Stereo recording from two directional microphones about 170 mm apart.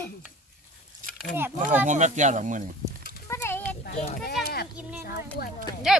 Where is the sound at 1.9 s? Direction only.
45° right (ahead or behind).